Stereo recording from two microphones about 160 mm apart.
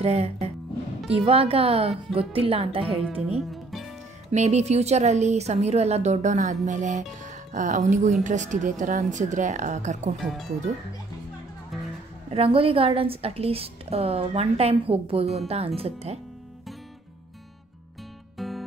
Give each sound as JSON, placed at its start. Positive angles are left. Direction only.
{"t": 0.0, "sound": "a woman's voice", "side_deg": -40}
{"t": 3.3, "sound": "music", "side_deg": 0}
{"t": 4.3, "sound": "a woman's voice", "side_deg": -45}
{"t": 10.1, "sound": "speech", "side_deg": 0}
{"t": 12.3, "sound": "a woman's voice", "side_deg": -35}
{"t": 18.4, "sound": "music", "side_deg": 0}